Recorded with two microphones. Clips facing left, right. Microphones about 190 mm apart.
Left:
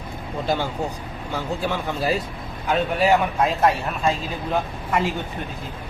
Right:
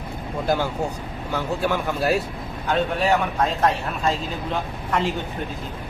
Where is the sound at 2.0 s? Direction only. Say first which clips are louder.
Right 2 dB; centre (ahead or behind).